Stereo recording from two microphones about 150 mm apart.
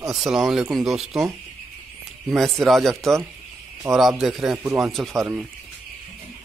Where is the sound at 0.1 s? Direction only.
5° right (ahead or behind).